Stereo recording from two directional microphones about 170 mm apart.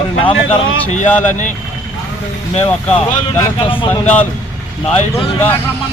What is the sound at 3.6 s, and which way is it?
Speech, 30° left (ahead or behind).